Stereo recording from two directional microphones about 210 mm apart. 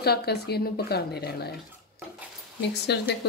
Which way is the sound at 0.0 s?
50° left (ahead or behind).